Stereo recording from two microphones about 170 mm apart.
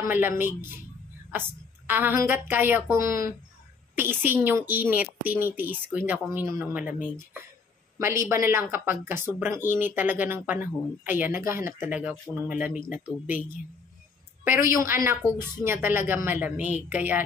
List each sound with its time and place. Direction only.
0.1 s speech: 10° right (ahead or behind)
1.9 s speech: 10° right (ahead or behind)
14.7 s speech: 15° right (ahead or behind)